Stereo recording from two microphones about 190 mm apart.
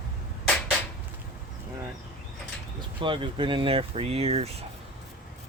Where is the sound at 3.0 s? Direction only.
25° right (ahead or behind).